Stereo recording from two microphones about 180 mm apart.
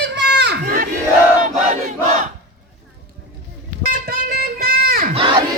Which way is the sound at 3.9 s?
55° right (ahead or behind).